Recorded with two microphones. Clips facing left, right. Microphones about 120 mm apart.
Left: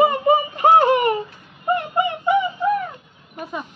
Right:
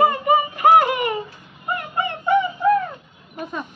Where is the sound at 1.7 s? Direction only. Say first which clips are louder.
Left 4 dB; 20° left (ahead or behind).